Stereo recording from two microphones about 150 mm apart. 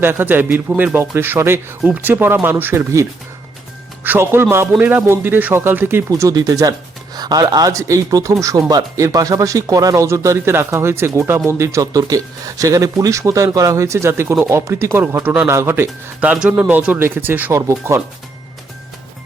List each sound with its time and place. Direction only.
0.0 s speech: 15° right (ahead or behind)